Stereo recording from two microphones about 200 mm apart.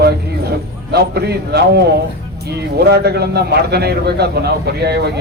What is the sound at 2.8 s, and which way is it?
Speech, 55° right (ahead or behind).